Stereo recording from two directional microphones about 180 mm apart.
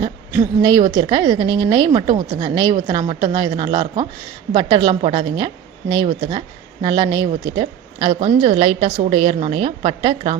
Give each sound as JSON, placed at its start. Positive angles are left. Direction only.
{"t": 0.6, "sound": "a woman's voice", "side_deg": -20}